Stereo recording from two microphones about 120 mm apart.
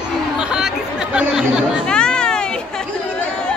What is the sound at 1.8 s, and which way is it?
Children playing, 5° left (ahead or behind).